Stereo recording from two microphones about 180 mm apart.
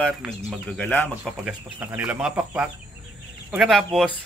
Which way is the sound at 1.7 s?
10° right (ahead or behind).